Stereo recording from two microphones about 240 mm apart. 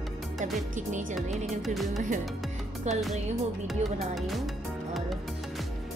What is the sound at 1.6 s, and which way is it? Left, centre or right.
Speech, centre.